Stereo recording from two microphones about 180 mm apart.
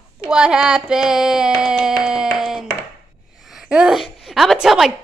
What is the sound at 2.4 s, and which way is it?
Hands, centre (ahead or behind).